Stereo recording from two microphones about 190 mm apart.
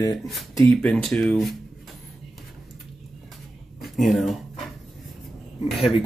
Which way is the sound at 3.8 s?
Centre (ahead or behind).